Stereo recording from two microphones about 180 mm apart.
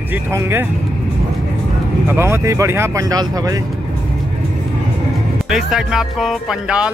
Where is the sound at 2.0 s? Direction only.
15° right (ahead or behind).